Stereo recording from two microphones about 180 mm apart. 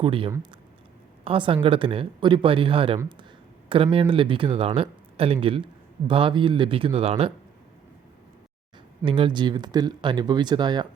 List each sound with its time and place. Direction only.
0.0 s a woman's voice: 30° right (ahead or behind)
9.0 s speech: 25° right (ahead or behind)